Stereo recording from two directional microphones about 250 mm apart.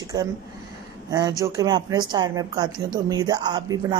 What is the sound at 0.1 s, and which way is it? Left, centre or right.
A woman's voice, centre.